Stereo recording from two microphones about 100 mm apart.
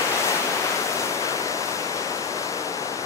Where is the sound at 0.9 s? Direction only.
30° left (ahead or behind).